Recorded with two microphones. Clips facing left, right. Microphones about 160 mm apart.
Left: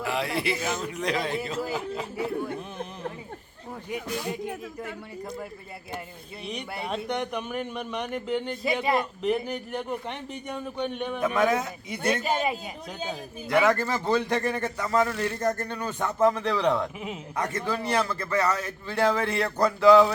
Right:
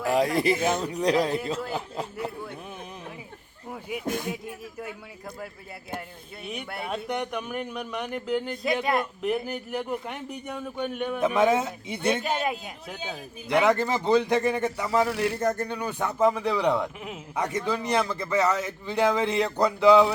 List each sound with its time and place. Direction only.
0.0 s speech: 40° right (ahead or behind)
0.8 s speech: 35° right (ahead or behind)
4.0 s a man's voice: 50° right (ahead or behind)
6.4 s speech: 5° right (ahead or behind)
11.3 s a man's voice: 25° right (ahead or behind)
12.0 s speech: 5° left (ahead or behind)
13.5 s a man's voice: 20° right (ahead or behind)